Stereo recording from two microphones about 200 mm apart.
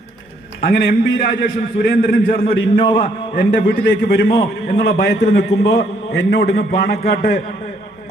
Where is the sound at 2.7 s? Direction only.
25° left (ahead or behind).